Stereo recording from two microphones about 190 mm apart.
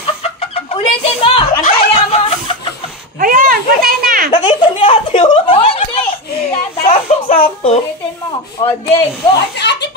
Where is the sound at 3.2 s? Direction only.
50° right (ahead or behind).